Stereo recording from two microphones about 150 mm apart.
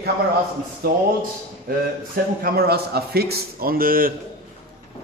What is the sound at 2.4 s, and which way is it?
A man's voice, 90° right.